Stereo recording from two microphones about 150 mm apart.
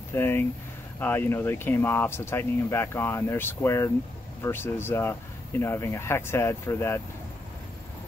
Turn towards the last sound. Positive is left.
turn(degrees=15)  # may be behind; listen again after turning